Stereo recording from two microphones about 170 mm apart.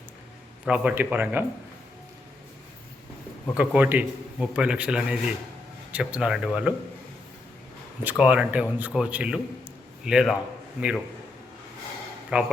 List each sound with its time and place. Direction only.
0.6 s a man's voice: 10° right (ahead or behind)
3.5 s a man's voice: 5° right (ahead or behind)
8.0 s a man's voice: 10° right (ahead or behind)
12.3 s a man's voice: 5° right (ahead or behind)